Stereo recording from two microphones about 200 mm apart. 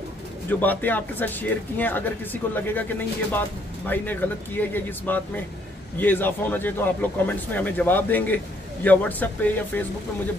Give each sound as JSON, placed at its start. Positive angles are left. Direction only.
{"t": 0.5, "sound": "speech", "side_deg": 10}